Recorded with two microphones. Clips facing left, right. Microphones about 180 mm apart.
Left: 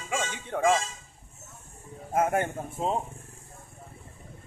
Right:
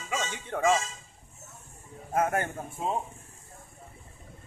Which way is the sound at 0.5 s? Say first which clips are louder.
Left 2 dB; 5° left (ahead or behind).